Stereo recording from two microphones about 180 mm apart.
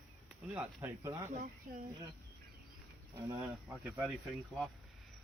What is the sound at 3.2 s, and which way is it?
Speech, 15° right (ahead or behind).